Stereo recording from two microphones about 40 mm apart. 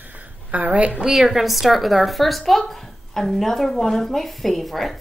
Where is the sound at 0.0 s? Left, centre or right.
Right.